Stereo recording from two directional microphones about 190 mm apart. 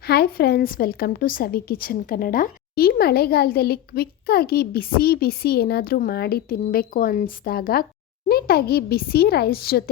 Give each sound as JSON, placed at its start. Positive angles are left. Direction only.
{"t": 0.0, "sound": "a woman's voice", "side_deg": 55}